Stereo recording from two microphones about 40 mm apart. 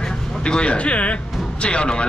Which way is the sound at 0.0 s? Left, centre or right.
Left.